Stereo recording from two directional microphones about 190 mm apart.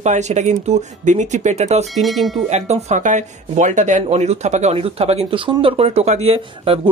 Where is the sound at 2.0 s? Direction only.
Centre (ahead or behind).